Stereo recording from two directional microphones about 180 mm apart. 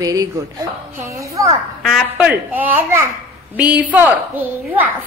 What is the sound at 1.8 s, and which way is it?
A woman's voice, centre (ahead or behind).